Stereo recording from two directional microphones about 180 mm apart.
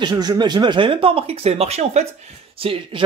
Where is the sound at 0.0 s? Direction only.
20° right (ahead or behind).